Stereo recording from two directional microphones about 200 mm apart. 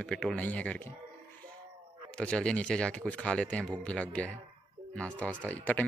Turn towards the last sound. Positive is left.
turn(degrees=10)  # may be behind; listen again after turning